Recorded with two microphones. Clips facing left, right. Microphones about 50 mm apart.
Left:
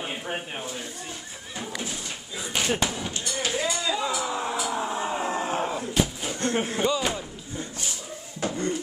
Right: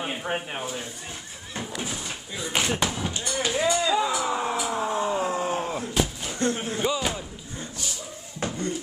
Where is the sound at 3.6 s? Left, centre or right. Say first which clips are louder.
Right 6 dB; right.